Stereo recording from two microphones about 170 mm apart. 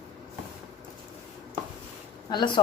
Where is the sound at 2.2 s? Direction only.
25° left (ahead or behind).